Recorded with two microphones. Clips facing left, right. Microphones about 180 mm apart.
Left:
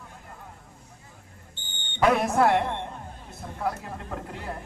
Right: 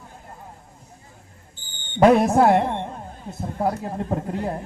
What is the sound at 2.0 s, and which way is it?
A man's voice, 40° right (ahead or behind).